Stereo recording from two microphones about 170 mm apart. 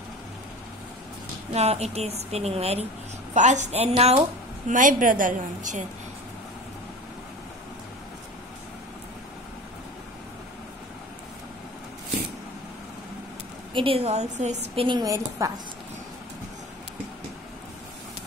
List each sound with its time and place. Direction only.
1.5 s a woman's voice: 40° right (ahead or behind)
4.6 s a woman's voice: 50° right (ahead or behind)
13.7 s a woman's voice: 35° right (ahead or behind); by 15.6 s 20° right (ahead or behind)